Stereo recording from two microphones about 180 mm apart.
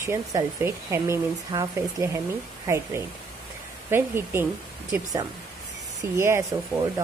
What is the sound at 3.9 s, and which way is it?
Speech, 15° right (ahead or behind).